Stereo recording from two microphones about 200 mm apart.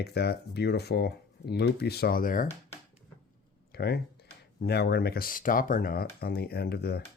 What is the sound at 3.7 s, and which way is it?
Speech, 55° left (ahead or behind).